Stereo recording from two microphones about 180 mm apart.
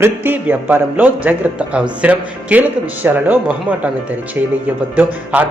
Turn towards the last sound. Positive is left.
turn(degrees=-10)  # may be behind; listen again after turning